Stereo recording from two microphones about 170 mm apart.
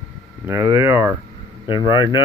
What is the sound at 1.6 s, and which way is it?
Speech, 30° left (ahead or behind).